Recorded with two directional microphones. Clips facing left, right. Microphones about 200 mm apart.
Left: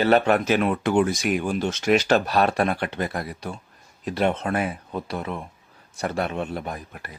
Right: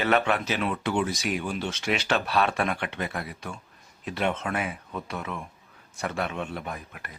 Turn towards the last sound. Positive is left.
turn(degrees=35)  # may be behind; listen again after turning